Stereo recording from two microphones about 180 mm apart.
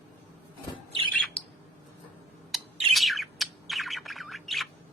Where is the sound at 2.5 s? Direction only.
Centre (ahead or behind).